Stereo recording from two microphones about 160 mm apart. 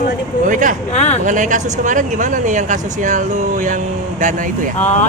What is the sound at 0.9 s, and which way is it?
Speech, 45° left (ahead or behind).